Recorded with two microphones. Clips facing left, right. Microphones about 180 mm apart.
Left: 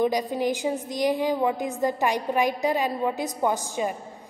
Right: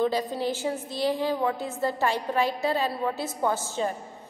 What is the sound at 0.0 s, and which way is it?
A woman's voice, 15° left (ahead or behind).